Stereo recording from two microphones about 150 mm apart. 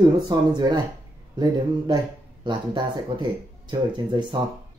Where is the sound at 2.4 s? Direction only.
30° right (ahead or behind).